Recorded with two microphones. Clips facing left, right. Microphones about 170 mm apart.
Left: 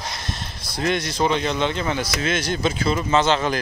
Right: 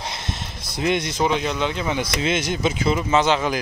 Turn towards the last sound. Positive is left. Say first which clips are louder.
# even
turn(degrees=-10)  # may be behind; listen again after turning